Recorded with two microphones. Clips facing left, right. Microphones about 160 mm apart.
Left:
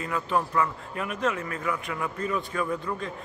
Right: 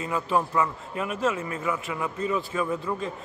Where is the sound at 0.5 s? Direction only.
20° right (ahead or behind).